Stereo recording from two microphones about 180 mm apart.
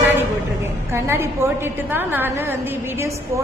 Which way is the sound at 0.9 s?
15° right (ahead or behind).